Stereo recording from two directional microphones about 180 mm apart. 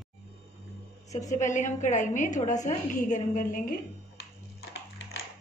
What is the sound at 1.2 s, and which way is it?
A woman's voice, 45° left (ahead or behind).